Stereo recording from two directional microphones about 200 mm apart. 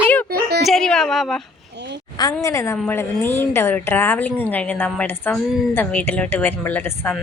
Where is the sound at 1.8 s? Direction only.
60° right (ahead or behind).